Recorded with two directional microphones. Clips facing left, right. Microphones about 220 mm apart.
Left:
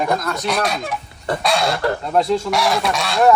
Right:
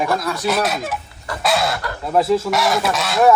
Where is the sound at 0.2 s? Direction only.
5° right (ahead or behind).